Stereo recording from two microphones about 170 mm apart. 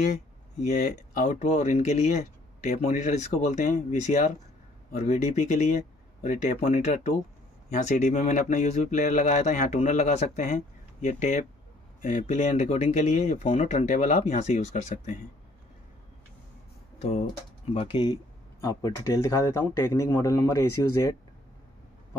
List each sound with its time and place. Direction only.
0.0 s speech: 45° left (ahead or behind)
17.0 s speech: 45° left (ahead or behind)
17.7 s speech: 30° left (ahead or behind)